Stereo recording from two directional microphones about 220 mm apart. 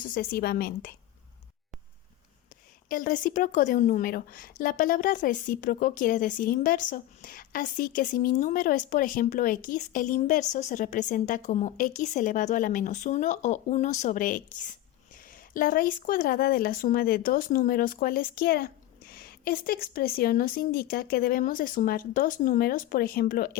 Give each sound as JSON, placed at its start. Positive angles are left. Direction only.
{"t": 0.0, "sound": "a woman's voice", "side_deg": 40}
{"t": 2.9, "sound": "a woman's voice", "side_deg": 40}